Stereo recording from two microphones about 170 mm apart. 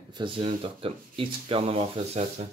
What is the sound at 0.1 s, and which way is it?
Speech, 30° right (ahead or behind).